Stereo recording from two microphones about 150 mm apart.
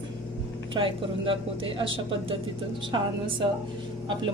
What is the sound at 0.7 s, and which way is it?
A woman's voice, 35° right (ahead or behind).